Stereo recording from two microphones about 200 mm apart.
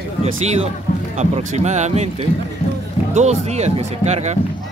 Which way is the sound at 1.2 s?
35° right (ahead or behind).